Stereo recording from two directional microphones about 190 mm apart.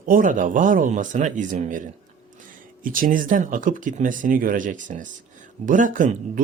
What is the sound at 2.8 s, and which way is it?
A man's voice, 45° right (ahead or behind).